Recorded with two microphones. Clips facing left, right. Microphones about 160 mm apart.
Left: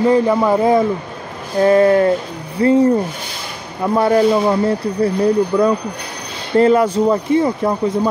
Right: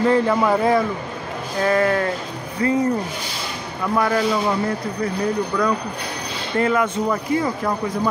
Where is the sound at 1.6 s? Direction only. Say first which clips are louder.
Left 8 dB; 25° left (ahead or behind).